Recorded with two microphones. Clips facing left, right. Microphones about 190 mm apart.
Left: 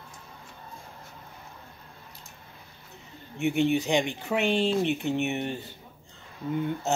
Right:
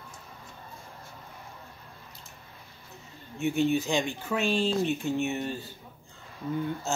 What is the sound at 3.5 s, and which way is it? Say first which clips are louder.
Speech: left 1 dB; 70° left (ahead or behind).